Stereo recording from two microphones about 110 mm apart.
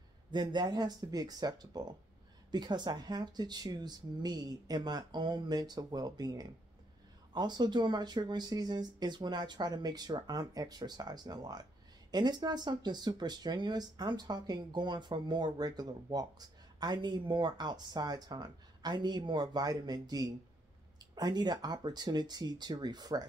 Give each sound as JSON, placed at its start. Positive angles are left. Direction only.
{"t": 0.3, "sound": "speech", "side_deg": -45}